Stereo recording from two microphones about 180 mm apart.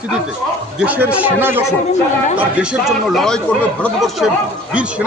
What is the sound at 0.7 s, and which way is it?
A man's voice, 10° right (ahead or behind).